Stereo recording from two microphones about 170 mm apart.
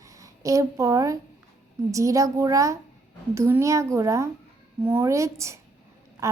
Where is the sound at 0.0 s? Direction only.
20° right (ahead or behind).